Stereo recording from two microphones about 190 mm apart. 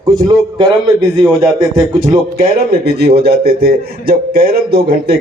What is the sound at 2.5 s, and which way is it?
Speech, 60° right (ahead or behind).